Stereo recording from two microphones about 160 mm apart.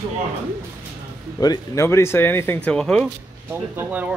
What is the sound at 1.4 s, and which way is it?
Speech, 20° left (ahead or behind).